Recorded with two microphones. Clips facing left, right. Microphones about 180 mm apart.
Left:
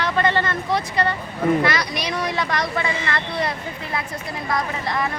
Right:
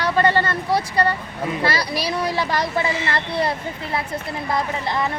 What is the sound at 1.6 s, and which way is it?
Speech, 30° right (ahead or behind).